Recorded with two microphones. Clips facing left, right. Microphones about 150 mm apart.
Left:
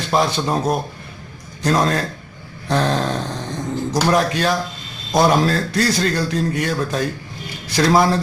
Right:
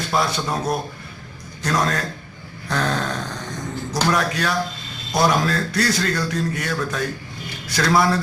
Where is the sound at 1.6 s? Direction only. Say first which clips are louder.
Left 4 dB; 30° left (ahead or behind).